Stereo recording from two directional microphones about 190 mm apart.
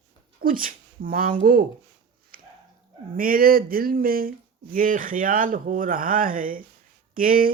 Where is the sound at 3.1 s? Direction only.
50° right (ahead or behind).